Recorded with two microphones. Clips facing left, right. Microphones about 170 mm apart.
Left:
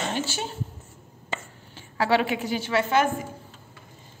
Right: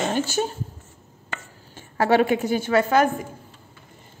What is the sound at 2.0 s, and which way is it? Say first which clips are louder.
Speech: right 4 dB; 45° right (ahead or behind).